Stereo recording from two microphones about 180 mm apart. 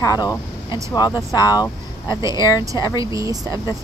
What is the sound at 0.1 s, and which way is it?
Speech, 20° left (ahead or behind).